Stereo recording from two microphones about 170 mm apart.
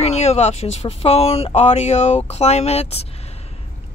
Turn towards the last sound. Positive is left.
turn(degrees=40)  # may be behind; listen again after turning